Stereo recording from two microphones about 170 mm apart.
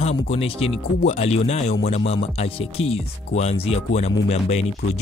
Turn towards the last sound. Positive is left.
turn(degrees=40)  # may be behind; listen again after turning